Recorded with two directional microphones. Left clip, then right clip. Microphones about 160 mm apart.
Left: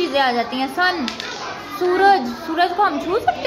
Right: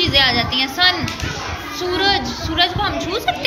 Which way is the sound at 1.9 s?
40° left (ahead or behind).